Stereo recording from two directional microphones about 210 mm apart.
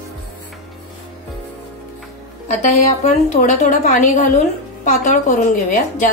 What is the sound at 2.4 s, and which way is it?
A woman's voice, 30° left (ahead or behind).